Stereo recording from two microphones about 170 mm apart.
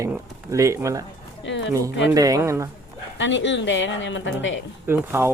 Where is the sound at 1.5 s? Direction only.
90° left.